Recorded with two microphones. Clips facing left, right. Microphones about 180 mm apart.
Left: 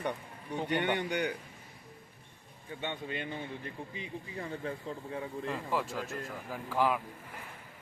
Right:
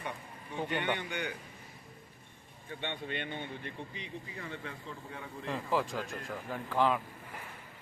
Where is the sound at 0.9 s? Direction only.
40° left (ahead or behind).